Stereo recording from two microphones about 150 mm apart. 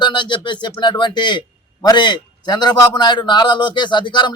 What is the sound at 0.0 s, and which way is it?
A man's voice, 30° left (ahead or behind).